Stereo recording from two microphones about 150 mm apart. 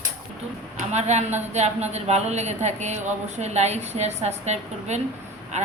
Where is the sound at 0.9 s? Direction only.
50° right (ahead or behind).